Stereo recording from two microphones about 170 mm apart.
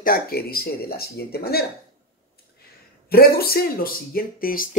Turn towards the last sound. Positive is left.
turn(degrees=55)  # may be behind; listen again after turning